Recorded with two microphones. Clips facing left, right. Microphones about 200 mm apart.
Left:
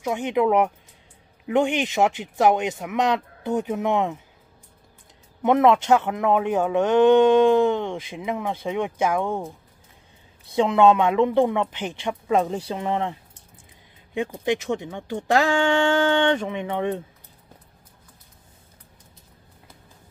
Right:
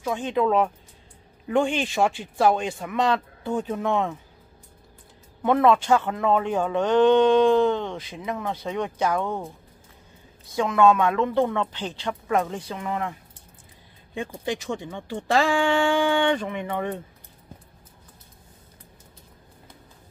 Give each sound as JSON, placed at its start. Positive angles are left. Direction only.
{"t": 0.0, "sound": "speech", "side_deg": 20}
{"t": 5.4, "sound": "speech", "side_deg": 20}
{"t": 10.5, "sound": "a woman's voice", "side_deg": 25}
{"t": 14.4, "sound": "speech", "side_deg": 20}